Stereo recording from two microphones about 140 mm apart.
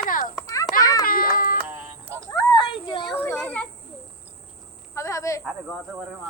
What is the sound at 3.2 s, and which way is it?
Child singing, 10° left (ahead or behind).